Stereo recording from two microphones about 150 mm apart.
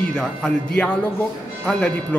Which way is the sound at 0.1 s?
5° left (ahead or behind).